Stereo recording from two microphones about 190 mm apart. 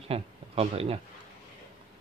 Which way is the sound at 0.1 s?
30° right (ahead or behind).